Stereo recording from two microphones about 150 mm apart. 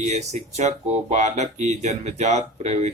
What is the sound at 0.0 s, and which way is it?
Speech, 50° right (ahead or behind).